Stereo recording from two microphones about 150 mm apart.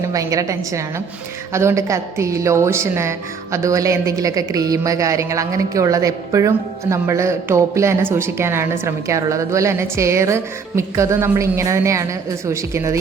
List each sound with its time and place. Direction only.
0.0 s a woman's voice: 20° right (ahead or behind)